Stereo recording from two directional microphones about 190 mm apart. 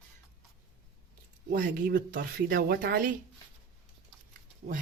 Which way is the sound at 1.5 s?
50° right (ahead or behind).